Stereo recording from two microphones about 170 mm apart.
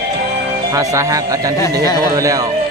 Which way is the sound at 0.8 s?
20° right (ahead or behind).